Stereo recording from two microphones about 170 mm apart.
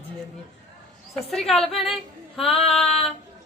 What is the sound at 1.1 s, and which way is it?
A woman's voice, centre (ahead or behind).